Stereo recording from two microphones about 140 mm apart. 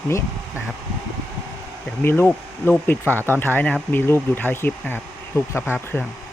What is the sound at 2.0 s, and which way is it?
Speech, 15° left (ahead or behind).